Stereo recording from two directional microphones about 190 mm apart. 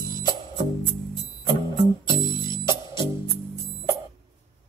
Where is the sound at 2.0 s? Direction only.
20° left (ahead or behind).